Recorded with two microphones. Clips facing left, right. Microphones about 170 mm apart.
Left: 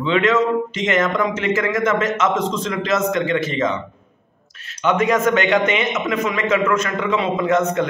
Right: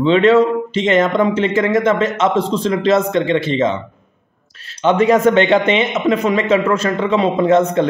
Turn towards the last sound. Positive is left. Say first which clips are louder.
# right 5 dB
turn(degrees=-30)  # may be behind; listen again after turning